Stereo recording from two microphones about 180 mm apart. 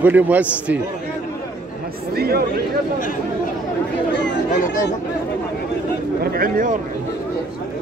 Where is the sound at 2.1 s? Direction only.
60° right (ahead or behind).